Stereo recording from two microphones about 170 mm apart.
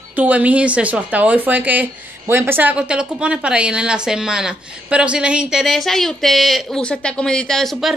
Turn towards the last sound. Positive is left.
turn(degrees=0)  # may be behind; listen again after turning